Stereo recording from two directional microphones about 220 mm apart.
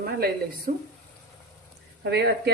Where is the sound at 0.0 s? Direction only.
45° right (ahead or behind).